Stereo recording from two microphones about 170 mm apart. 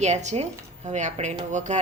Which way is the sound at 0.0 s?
40° right (ahead or behind).